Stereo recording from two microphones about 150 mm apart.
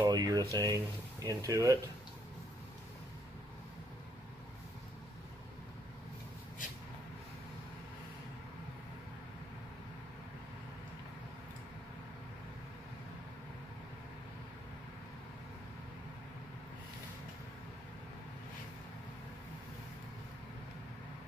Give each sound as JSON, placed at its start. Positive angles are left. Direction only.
{"t": 0.0, "sound": "speech", "side_deg": -25}